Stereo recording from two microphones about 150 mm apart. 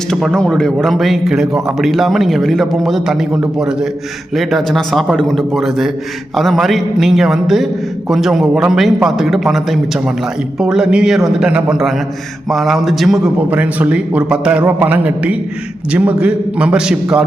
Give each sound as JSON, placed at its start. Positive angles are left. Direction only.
{"t": 0.1, "sound": "a man's voice", "side_deg": 5}